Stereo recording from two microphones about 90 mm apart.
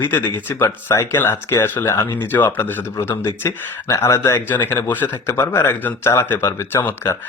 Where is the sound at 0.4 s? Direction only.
25° left (ahead or behind).